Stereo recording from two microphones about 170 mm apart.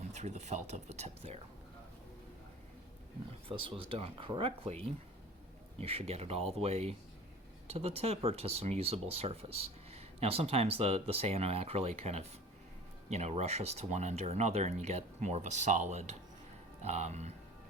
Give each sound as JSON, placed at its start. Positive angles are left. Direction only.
{"t": 0.1, "sound": "speech", "side_deg": -40}
{"t": 3.5, "sound": "speech", "side_deg": -30}